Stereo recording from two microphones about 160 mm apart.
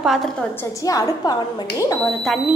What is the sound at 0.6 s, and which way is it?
Speech, 20° left (ahead or behind).